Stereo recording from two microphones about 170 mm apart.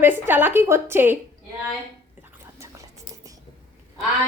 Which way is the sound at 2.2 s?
15° right (ahead or behind).